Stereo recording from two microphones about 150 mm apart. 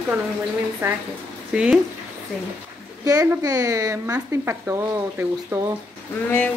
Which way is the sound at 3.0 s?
25° right (ahead or behind).